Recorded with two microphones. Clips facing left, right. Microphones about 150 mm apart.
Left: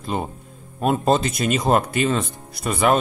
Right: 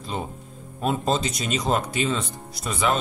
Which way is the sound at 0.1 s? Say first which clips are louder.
Left 3 dB; 55° left (ahead or behind).